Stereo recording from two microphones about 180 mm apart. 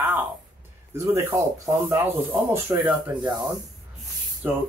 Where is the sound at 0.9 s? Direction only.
15° right (ahead or behind).